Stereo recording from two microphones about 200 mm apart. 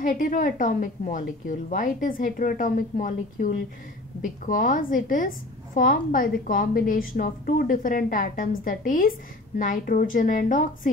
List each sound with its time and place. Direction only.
0.0 s a woman's voice: 40° left (ahead or behind)